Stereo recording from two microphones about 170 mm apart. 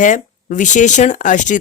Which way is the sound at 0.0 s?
50° left (ahead or behind).